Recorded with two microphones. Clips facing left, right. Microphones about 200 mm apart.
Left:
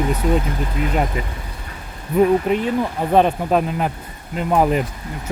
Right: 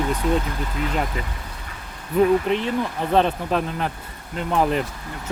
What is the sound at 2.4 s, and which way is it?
Speech, 10° left (ahead or behind).